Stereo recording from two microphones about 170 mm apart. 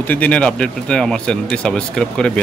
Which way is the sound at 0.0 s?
10° left (ahead or behind).